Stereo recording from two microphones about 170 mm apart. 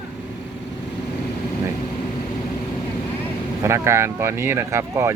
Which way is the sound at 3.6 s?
15° right (ahead or behind).